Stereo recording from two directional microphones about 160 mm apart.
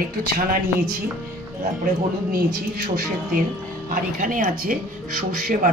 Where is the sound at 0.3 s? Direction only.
65° right (ahead or behind).